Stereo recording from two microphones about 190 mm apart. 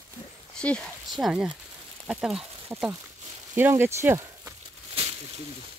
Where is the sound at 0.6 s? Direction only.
5° left (ahead or behind); by 4.6 s 15° right (ahead or behind).